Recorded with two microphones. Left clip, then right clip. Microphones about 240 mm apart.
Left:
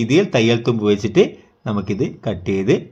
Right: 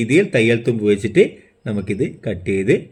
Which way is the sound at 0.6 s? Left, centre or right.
Centre.